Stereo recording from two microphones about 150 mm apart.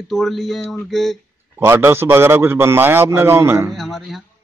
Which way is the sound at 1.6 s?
15° right (ahead or behind).